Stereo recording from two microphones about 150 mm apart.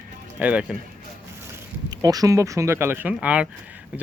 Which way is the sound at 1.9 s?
25° right (ahead or behind).